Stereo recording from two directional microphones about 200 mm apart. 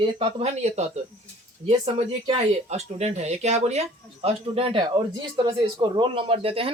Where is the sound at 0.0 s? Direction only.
30° right (ahead or behind).